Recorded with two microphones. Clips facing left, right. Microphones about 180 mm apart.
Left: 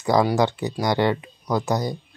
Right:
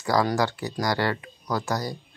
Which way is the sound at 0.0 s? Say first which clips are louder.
Left 4 dB; 20° left (ahead or behind).